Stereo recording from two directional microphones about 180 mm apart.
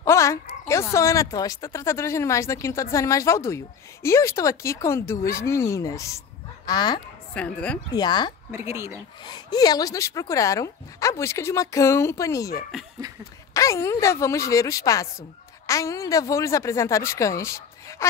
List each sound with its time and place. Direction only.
0.0 s a sound: 15° left (ahead or behind)
0.7 s a woman's voice: 15° left (ahead or behind)
7.3 s a woman's voice: 5° left (ahead or behind)
7.9 s speech: 25° left (ahead or behind)
8.5 s speech: 15° right (ahead or behind)
9.2 s a woman's voice: 20° left (ahead or behind)